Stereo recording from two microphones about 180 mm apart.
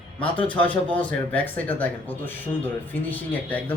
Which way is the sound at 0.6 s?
10° left (ahead or behind).